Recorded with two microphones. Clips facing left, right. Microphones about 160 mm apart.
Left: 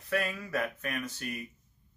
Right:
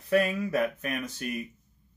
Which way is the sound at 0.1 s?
20° right (ahead or behind).